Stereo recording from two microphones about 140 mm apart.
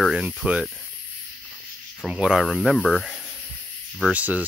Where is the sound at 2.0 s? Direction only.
5° right (ahead or behind).